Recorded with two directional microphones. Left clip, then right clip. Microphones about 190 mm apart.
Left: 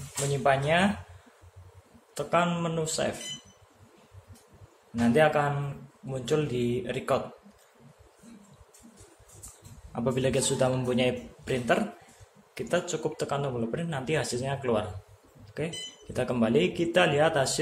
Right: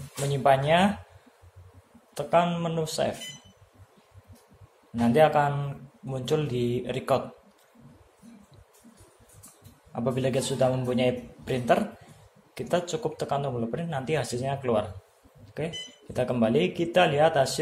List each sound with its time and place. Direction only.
0.3 s speech: 20° right (ahead or behind)
2.1 s speech: 10° right (ahead or behind)
4.9 s speech: 15° right (ahead or behind)
9.9 s a man's voice: centre (ahead or behind)